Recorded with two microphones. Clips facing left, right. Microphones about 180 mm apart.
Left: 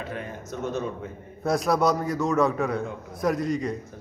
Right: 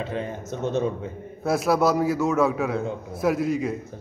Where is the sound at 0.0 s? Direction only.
25° right (ahead or behind).